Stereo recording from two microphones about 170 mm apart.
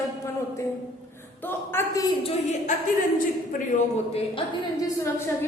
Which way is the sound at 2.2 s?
40° left (ahead or behind).